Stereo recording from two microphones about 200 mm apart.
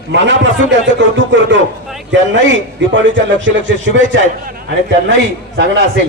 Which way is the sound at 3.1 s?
65° right (ahead or behind).